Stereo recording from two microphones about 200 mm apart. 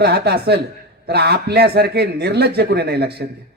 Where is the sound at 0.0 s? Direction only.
55° right (ahead or behind).